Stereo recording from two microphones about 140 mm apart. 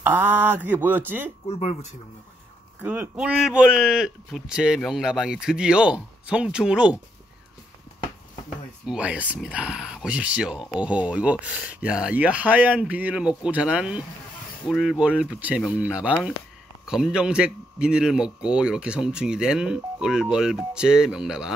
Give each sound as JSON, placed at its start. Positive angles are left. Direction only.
{"t": 0.0, "sound": "speech", "side_deg": -15}
{"t": 1.5, "sound": "speech", "side_deg": 50}
{"t": 2.8, "sound": "a man's voice", "side_deg": -10}
{"t": 8.8, "sound": "a man's voice", "side_deg": -10}